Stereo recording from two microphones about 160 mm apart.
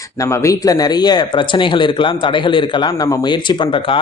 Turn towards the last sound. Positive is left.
turn(degrees=30)  # may be behind; listen again after turning